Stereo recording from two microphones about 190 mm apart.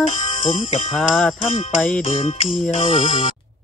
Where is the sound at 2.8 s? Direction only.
40° left (ahead or behind).